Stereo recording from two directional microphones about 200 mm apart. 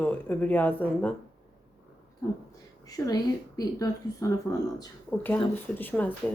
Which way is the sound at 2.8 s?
15° left (ahead or behind).